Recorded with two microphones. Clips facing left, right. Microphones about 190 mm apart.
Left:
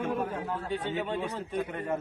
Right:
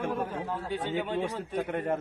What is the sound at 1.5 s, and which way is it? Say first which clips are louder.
Speech: right 2 dB; 50° right (ahead or behind).